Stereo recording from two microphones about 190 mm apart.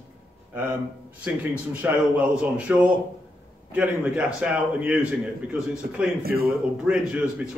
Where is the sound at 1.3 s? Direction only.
10° right (ahead or behind).